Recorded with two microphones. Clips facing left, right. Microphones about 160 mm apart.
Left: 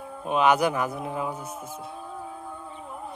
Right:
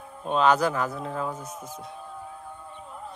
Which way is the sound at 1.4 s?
55° left (ahead or behind).